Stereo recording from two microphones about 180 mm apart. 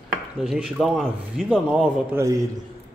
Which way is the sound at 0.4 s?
Centre (ahead or behind).